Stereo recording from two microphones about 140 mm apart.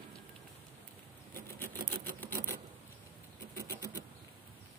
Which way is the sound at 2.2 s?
15° left (ahead or behind).